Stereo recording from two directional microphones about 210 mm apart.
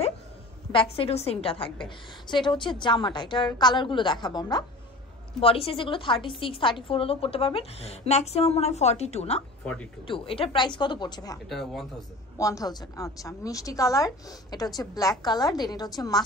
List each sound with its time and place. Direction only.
0.7 s a woman's voice: 25° left (ahead or behind)
11.4 s speech: centre (ahead or behind)
12.4 s a woman's voice: 15° left (ahead or behind)